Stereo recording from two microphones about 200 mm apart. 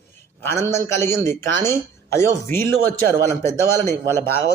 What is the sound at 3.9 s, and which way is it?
Speech, 10° left (ahead or behind).